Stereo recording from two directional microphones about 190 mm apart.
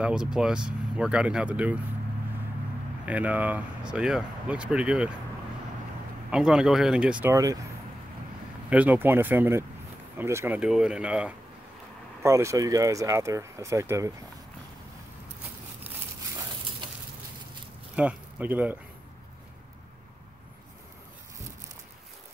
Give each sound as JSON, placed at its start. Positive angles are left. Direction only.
{"t": 0.0, "sound": "speech", "side_deg": -5}
{"t": 3.1, "sound": "speech", "side_deg": -10}
{"t": 6.3, "sound": "speech", "side_deg": -5}
{"t": 8.6, "sound": "speech", "side_deg": -10}
{"t": 17.9, "sound": "speech", "side_deg": -10}